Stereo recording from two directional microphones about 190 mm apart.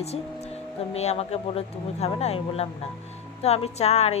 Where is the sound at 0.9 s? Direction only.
35° left (ahead or behind).